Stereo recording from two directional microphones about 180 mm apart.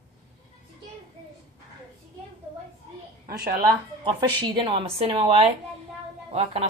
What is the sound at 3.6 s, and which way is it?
Speech, 25° right (ahead or behind).